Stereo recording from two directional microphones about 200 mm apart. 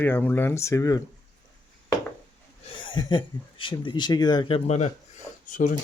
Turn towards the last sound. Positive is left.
turn(degrees=40)  # may be behind; listen again after turning